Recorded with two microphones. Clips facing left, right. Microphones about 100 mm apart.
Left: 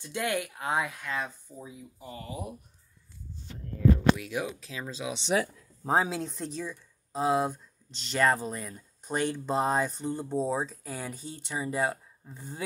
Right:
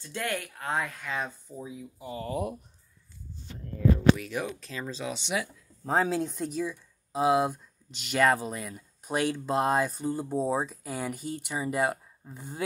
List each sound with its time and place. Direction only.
0.0 s speech: 15° left (ahead or behind)
1.1 s speech: 15° right (ahead or behind)
2.2 s speech: 55° right (ahead or behind)
4.2 s speech: 5° left (ahead or behind)
5.1 s speech: 35° left (ahead or behind)
5.9 s speech: 5° left (ahead or behind); by 12.5 s 10° right (ahead or behind)